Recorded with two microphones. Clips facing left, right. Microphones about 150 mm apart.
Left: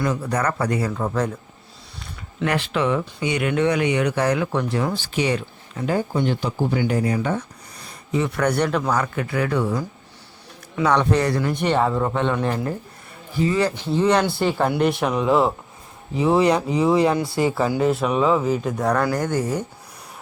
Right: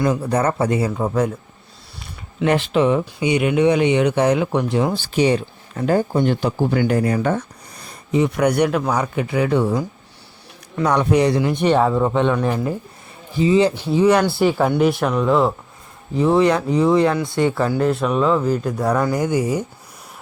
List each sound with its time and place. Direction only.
0.0 s speech: 30° right (ahead or behind); by 1.3 s 15° right (ahead or behind)
2.4 s speech: 20° right (ahead or behind)
5.7 s speech: 45° right (ahead or behind)
8.1 s speech: 15° right (ahead or behind)
10.8 s speech: 10° right (ahead or behind)
13.4 s speech: 20° right (ahead or behind)
13.7 s speech: 10° right (ahead or behind)